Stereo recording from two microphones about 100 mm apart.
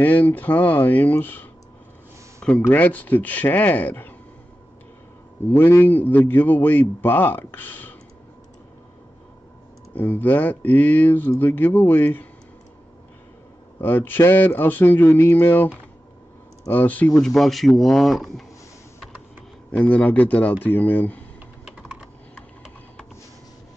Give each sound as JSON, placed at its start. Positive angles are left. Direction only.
{"t": 0.0, "sound": "speech", "side_deg": 15}
{"t": 5.5, "sound": "a man's voice", "side_deg": 20}
{"t": 9.9, "sound": "a man's voice", "side_deg": 20}
{"t": 13.7, "sound": "a man's voice", "side_deg": 20}
{"t": 17.2, "sound": "speech", "side_deg": 5}
{"t": 19.7, "sound": "speech", "side_deg": 10}